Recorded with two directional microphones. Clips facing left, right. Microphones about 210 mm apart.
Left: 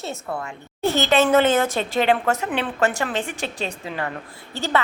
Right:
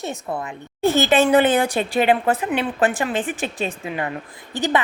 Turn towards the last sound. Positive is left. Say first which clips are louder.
# right 2 dB
turn(degrees=-15)  # may be behind; listen again after turning